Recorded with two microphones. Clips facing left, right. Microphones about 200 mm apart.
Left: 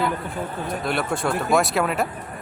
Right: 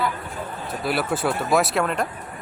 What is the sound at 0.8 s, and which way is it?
Speech, 5° right (ahead or behind).